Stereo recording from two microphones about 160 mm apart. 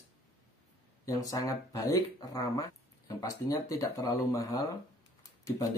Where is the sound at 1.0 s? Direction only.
20° left (ahead or behind).